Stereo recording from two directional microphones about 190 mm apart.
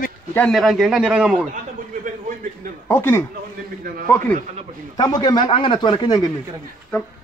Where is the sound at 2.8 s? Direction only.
10° left (ahead or behind).